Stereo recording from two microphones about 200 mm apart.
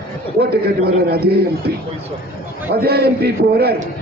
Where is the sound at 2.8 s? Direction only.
50° right (ahead or behind).